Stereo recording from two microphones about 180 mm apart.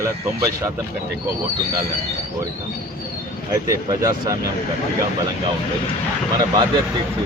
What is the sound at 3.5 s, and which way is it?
Speech, 20° right (ahead or behind).